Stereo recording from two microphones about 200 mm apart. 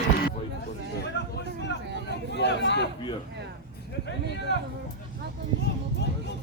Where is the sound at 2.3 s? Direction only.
60° left (ahead or behind).